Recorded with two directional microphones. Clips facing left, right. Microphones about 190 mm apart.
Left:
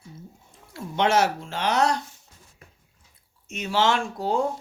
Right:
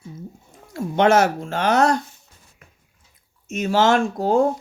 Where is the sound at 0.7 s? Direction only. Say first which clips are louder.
Right 6 dB; 50° right (ahead or behind).